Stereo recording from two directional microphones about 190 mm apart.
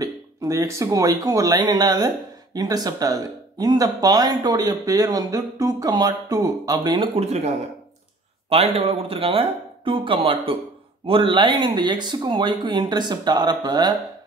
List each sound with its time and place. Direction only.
0.0 s speech: 20° right (ahead or behind)